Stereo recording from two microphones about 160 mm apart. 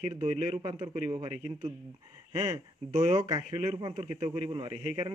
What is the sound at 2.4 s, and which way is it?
Speech, 20° right (ahead or behind).